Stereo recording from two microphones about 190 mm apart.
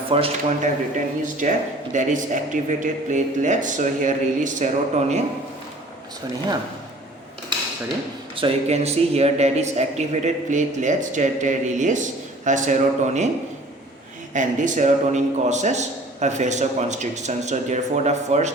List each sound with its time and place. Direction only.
0.1 s speech: 35° right (ahead or behind)
8.4 s speech: 30° right (ahead or behind)
14.3 s speech: 40° right (ahead or behind)